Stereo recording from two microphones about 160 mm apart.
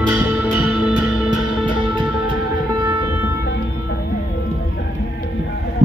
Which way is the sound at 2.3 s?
30° right (ahead or behind).